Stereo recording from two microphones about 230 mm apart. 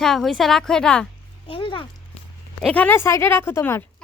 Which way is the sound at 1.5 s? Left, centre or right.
Left.